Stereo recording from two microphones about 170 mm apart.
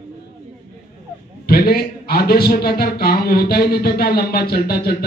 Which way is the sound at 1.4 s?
65° left (ahead or behind).